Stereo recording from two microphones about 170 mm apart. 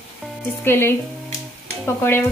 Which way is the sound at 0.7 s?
15° left (ahead or behind).